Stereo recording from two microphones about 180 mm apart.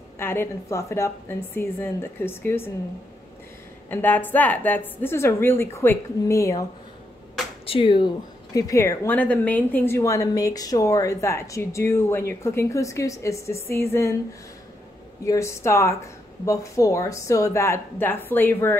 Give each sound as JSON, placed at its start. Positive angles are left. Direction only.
{"t": 0.2, "sound": "a woman's voice", "side_deg": 15}
{"t": 3.9, "sound": "a woman's voice", "side_deg": 10}
{"t": 7.6, "sound": "speech", "side_deg": 30}
{"t": 8.5, "sound": "a woman's voice", "side_deg": 15}
{"t": 15.2, "sound": "a woman's voice", "side_deg": 15}